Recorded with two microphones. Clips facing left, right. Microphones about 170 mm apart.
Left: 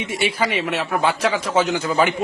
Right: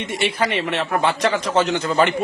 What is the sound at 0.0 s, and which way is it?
A woman's voice, 5° left (ahead or behind).